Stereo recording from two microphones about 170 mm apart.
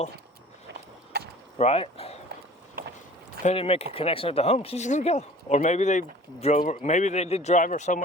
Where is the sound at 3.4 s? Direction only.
35° left (ahead or behind).